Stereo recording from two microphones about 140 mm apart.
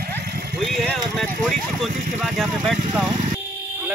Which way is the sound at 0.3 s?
90° right.